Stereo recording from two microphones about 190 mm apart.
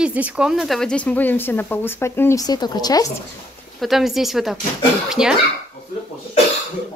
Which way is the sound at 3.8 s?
Centre (ahead or behind).